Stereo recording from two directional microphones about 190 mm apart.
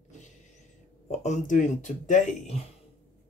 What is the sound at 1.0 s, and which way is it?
Speech, 35° left (ahead or behind).